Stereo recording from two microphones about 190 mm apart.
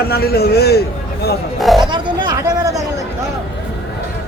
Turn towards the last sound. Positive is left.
turn(degrees=-20)  # may be behind; listen again after turning